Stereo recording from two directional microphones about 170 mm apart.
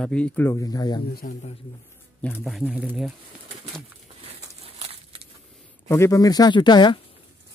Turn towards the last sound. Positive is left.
turn(degrees=25)  # may be behind; listen again after turning